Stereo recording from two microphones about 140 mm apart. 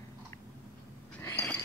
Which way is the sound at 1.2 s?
15° left (ahead or behind).